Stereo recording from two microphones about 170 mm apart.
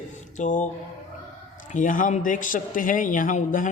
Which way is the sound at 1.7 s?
50° left (ahead or behind).